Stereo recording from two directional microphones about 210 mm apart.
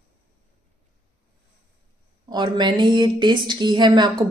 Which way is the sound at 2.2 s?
20° right (ahead or behind).